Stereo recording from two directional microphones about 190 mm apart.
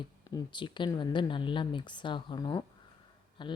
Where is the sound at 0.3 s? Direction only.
20° left (ahead or behind).